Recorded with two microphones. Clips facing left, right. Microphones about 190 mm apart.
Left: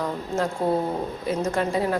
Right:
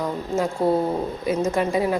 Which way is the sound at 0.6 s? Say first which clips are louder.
Right 5 dB; 10° right (ahead or behind).